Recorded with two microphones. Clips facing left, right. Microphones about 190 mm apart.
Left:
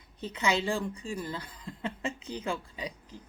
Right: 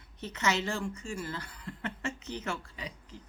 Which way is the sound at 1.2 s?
15° left (ahead or behind).